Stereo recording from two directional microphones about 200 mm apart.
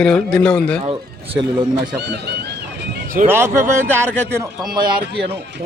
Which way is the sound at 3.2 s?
10° right (ahead or behind).